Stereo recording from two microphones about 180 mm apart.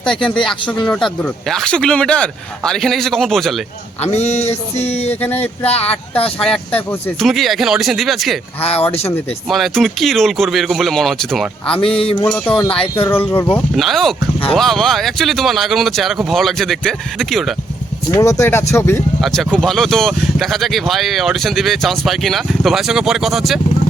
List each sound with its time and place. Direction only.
0.0 s speech: 5° left (ahead or behind)
4.0 s a sound: 40° left (ahead or behind)
6.4 s speech: 5° left (ahead or behind)
9.5 s speech: centre (ahead or behind)
18.1 s speech: 15° left (ahead or behind)
19.2 s speech: centre (ahead or behind)